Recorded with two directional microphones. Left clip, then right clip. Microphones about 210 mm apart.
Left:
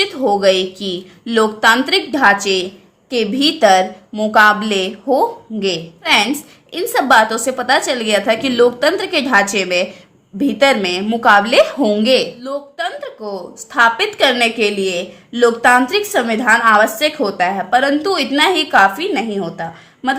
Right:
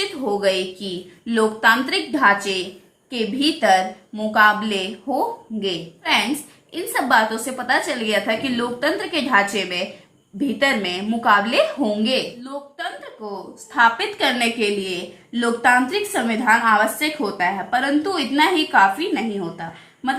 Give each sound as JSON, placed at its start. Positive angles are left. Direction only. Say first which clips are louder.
{"t": 0.0, "sound": "a woman's voice", "louder": "left 7 dB", "side_deg": 45}